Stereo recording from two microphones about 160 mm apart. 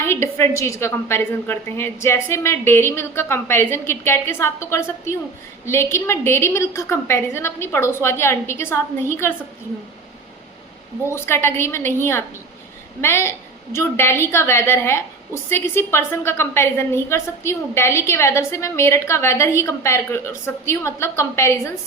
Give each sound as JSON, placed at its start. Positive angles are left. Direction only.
{"t": 0.0, "sound": "a woman's voice", "side_deg": 15}
{"t": 11.1, "sound": "a woman's voice", "side_deg": 15}